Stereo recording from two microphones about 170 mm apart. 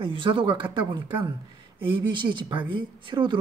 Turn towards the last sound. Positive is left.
turn(degrees=-30)  # may be behind; listen again after turning